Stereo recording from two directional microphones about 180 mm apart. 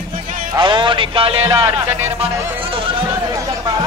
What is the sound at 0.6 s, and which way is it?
Speech, 25° right (ahead or behind).